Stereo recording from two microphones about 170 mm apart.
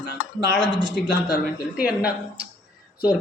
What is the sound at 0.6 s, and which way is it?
Speech, 25° right (ahead or behind).